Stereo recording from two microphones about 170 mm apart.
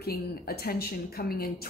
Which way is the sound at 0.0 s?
65° left (ahead or behind).